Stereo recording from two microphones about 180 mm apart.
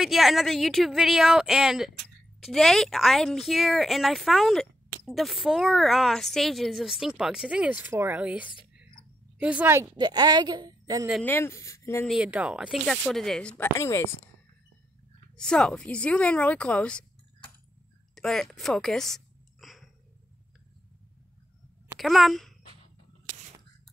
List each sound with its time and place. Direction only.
0.0 s a woman's voice: centre (ahead or behind)
9.9 s a woman's voice: 25° right (ahead or behind)
11.2 s speech: 15° left (ahead or behind)
12.1 s a woman's voice: 5° right (ahead or behind); by 14.3 s 15° left (ahead or behind)
15.3 s speech: 5° left (ahead or behind)
18.1 s a sound: centre (ahead or behind)
22.0 s a woman's voice: centre (ahead or behind)